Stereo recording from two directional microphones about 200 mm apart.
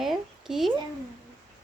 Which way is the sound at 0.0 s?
Centre (ahead or behind).